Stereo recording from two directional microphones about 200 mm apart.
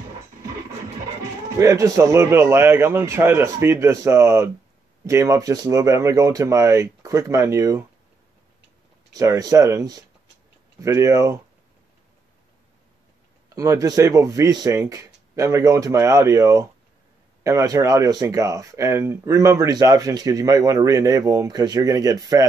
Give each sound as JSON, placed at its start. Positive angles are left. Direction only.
{"t": 1.6, "sound": "speech", "side_deg": -15}
{"t": 9.1, "sound": "speech", "side_deg": -15}
{"t": 13.6, "sound": "speech", "side_deg": -15}